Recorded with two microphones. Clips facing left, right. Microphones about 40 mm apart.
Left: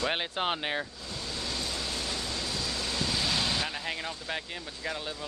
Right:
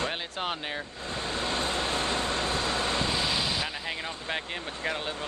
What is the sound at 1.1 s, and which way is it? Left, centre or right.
Vehicle, right.